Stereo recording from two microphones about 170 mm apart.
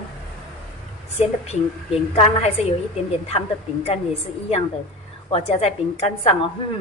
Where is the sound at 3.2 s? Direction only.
35° left (ahead or behind).